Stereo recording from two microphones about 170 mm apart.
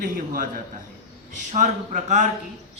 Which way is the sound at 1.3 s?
50° right (ahead or behind).